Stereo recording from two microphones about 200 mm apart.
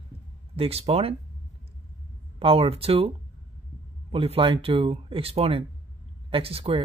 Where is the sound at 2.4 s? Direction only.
30° right (ahead or behind).